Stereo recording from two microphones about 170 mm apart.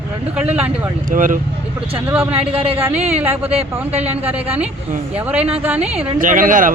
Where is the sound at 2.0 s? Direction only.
10° right (ahead or behind).